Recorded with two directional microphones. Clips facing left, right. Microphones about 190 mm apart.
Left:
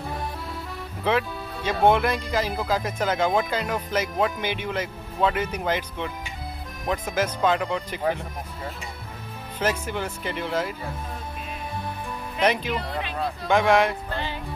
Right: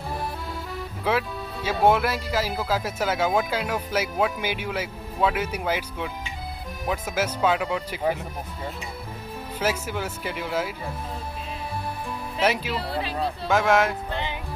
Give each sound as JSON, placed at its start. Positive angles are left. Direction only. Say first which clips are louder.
{"t": 1.0, "sound": "speech", "louder": "left 1 dB", "side_deg": -5}
{"t": 9.6, "sound": "speech", "louder": "left 1 dB", "side_deg": -5}
{"t": 12.4, "sound": "speech", "louder": "left 1 dB", "side_deg": -5}
{"t": 12.7, "sound": "speech", "louder": "right 1 dB", "side_deg": -35}
{"t": 13.5, "sound": "speech", "louder": "left 1 dB", "side_deg": 0}
{"t": 14.1, "sound": "music", "louder": "even", "side_deg": -15}